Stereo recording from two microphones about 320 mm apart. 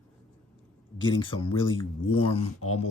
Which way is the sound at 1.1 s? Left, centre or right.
Centre.